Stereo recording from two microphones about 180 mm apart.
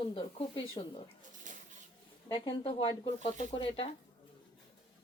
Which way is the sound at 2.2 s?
25° left (ahead or behind).